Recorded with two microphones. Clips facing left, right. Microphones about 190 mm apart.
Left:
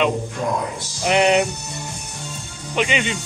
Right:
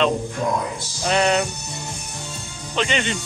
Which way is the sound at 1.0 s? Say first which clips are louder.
Left 3 dB; 20° left (ahead or behind).